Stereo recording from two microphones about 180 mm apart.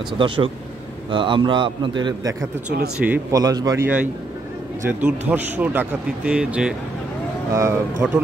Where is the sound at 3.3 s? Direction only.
20° right (ahead or behind); by 6.8 s 5° right (ahead or behind).